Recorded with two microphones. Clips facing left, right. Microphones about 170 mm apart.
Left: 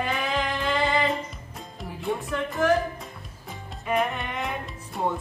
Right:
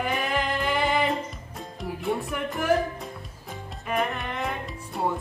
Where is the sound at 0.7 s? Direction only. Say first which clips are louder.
Left 1 dB; 15° right (ahead or behind).